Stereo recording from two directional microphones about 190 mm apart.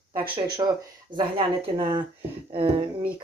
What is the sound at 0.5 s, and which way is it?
Speech, 25° right (ahead or behind).